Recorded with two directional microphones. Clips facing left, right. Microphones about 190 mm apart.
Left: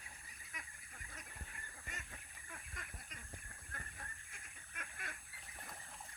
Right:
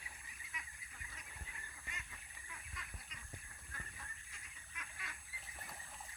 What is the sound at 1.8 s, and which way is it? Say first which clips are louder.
Goose: left 4 dB; 50° left (ahead or behind).